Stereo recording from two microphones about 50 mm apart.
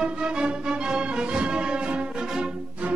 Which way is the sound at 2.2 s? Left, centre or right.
Centre.